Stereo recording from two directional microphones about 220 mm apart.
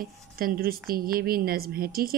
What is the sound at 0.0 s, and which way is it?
Speech, 40° right (ahead or behind).